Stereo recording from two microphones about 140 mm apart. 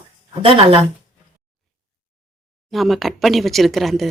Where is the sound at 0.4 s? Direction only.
40° right (ahead or behind).